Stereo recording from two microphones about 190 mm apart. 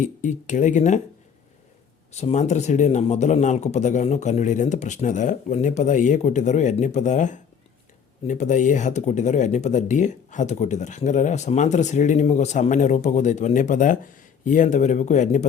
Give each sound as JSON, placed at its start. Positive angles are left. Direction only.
{"t": 0.0, "sound": "speech", "side_deg": 40}
{"t": 2.1, "sound": "speech", "side_deg": 35}